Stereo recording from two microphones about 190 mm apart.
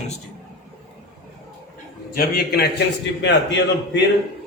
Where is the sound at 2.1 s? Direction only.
55° left (ahead or behind).